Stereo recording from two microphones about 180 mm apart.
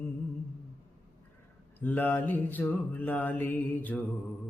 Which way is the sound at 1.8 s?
10° left (ahead or behind).